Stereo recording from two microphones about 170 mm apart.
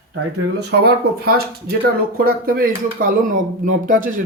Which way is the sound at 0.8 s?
65° right (ahead or behind).